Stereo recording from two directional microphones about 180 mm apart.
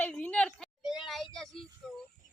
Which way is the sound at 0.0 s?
10° left (ahead or behind).